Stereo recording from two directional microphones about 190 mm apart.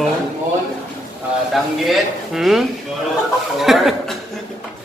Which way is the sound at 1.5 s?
Centre (ahead or behind).